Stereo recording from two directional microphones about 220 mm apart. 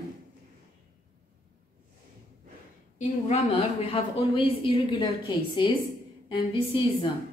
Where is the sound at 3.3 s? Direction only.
25° left (ahead or behind).